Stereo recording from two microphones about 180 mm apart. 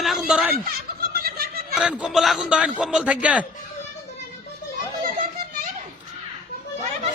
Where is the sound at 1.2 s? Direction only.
55° right (ahead or behind).